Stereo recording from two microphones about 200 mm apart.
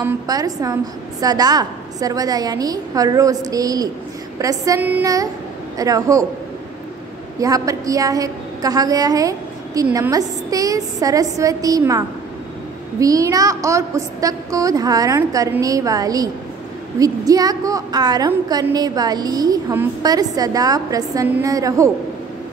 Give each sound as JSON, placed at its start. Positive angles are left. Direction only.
{"t": 0.0, "sound": "a woman's voice", "side_deg": -20}
{"t": 7.3, "sound": "a woman's voice", "side_deg": -15}
{"t": 13.0, "sound": "a woman's voice", "side_deg": -15}